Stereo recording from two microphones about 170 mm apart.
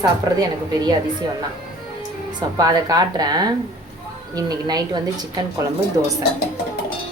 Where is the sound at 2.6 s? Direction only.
20° right (ahead or behind).